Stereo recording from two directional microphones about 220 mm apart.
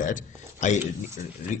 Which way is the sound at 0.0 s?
35° left (ahead or behind).